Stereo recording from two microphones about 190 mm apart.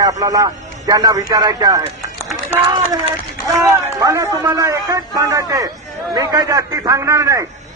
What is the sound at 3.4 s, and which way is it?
A man's voice, 15° right (ahead or behind).